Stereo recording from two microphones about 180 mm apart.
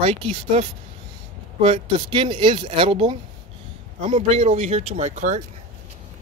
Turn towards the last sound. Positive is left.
turn(degrees=-40)  # may be behind; listen again after turning